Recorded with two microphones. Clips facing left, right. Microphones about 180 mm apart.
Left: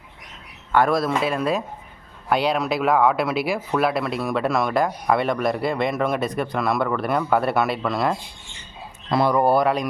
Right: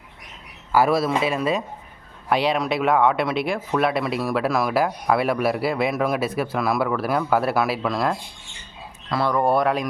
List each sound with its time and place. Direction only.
0.7 s speech: 5° right (ahead or behind)
9.0 s speech: 20° left (ahead or behind)
9.3 s speech: 5° left (ahead or behind)